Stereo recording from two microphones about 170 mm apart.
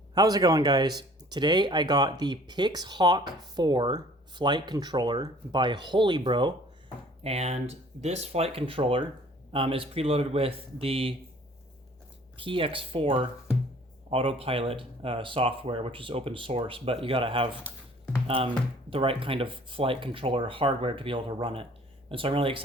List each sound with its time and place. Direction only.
0.1 s speech: 25° right (ahead or behind)
12.4 s speech: 30° right (ahead or behind)